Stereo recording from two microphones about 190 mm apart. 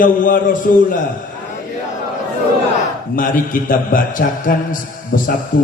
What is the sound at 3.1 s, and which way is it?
A man's voice, 45° left (ahead or behind).